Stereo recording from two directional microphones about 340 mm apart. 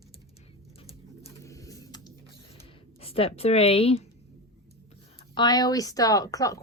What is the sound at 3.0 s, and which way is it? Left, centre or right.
Speech, centre.